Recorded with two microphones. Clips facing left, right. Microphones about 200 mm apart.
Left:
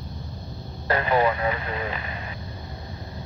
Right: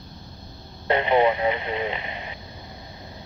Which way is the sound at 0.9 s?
25° right (ahead or behind).